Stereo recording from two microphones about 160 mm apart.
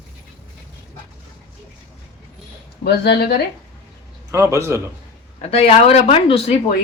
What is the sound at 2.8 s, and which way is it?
Speech, 90° left.